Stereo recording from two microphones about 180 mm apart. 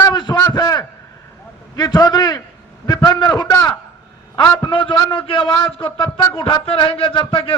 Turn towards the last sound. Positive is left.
turn(degrees=30)  # may be behind; listen again after turning